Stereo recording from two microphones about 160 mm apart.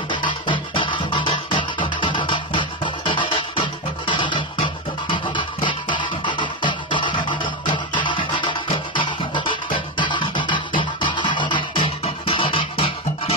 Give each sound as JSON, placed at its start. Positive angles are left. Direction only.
{"t": 0.1, "sound": "music", "side_deg": 30}